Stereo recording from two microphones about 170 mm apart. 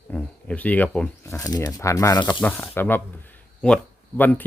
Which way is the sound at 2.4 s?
10° left (ahead or behind).